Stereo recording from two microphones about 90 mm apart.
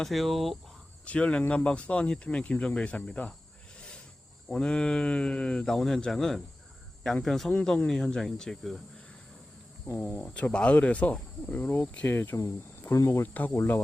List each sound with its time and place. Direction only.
0.0 s speech: centre (ahead or behind)
1.0 s speech: 15° left (ahead or behind)
3.8 s a sound: 10° left (ahead or behind)
4.4 s speech: 10° left (ahead or behind)
9.8 s speech: 25° left (ahead or behind)
13.2 s speech: 20° left (ahead or behind)